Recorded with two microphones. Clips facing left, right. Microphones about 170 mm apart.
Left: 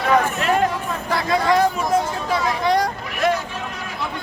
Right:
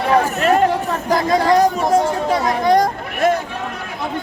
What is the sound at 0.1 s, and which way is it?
Chatter, 30° right (ahead or behind).